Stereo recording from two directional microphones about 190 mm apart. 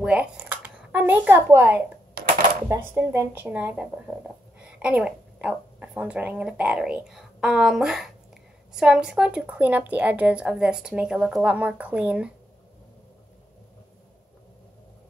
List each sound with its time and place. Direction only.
0.0 s typing: 5° right (ahead or behind)
2.2 s a sound: 60° right (ahead or behind)
2.7 s a woman's voice: 15° right (ahead or behind)